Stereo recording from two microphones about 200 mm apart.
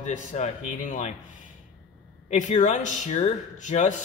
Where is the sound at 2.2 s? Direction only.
35° left (ahead or behind).